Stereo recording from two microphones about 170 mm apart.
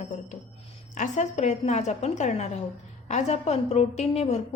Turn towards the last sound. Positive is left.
turn(degrees=40)  # may be behind; listen again after turning